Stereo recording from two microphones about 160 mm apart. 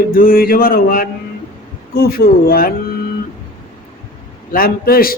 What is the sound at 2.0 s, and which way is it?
Mantra, 70° left (ahead or behind).